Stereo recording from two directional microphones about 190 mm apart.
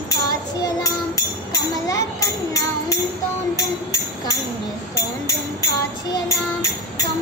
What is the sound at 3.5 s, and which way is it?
Music, 20° left (ahead or behind).